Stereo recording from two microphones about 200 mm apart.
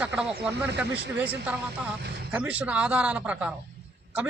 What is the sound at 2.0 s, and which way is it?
Speech, 55° right (ahead or behind).